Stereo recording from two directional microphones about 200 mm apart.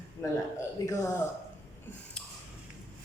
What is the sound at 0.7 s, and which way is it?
Speech, 15° left (ahead or behind).